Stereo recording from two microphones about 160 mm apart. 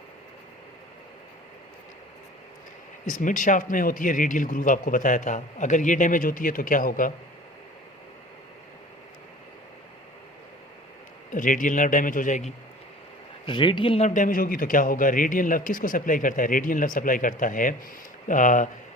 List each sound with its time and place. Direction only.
3.1 s a man's voice: 55° left (ahead or behind)
11.3 s a man's voice: 55° left (ahead or behind)
13.4 s a man's voice: 30° left (ahead or behind); by 18.7 s 55° left (ahead or behind)